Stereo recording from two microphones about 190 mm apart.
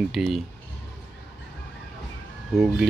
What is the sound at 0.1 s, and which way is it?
Speech, centre (ahead or behind).